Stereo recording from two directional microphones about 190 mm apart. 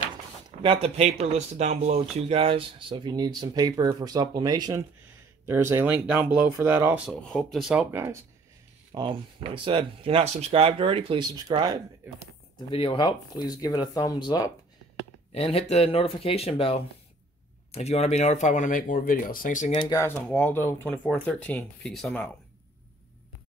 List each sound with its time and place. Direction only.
0.6 s speech: 30° right (ahead or behind); by 7.0 s 10° right (ahead or behind)
7.1 s speech: centre (ahead or behind)
7.9 s speech: 15° right (ahead or behind)
8.9 s speech: 25° right (ahead or behind)
12.5 s speech: 25° left (ahead or behind)
15.3 s speech: 30° left (ahead or behind)
19.7 s speech: 20° left (ahead or behind); by 22.3 s 5° left (ahead or behind)